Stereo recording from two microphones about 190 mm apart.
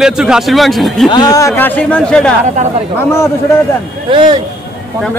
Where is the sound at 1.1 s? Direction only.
20° left (ahead or behind); by 2.3 s 5° left (ahead or behind).